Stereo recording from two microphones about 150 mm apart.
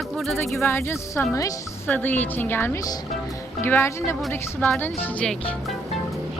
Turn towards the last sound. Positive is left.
turn(degrees=5)  # may be behind; listen again after turning